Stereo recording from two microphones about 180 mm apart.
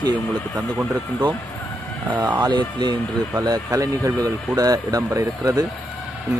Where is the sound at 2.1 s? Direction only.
10° right (ahead or behind).